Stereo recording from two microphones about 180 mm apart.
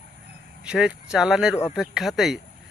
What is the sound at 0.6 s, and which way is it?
Speech, 5° right (ahead or behind).